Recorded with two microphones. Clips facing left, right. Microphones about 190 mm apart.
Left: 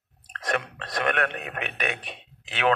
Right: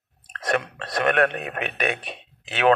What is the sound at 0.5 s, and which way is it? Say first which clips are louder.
Speech: right 4 dB; 40° right (ahead or behind).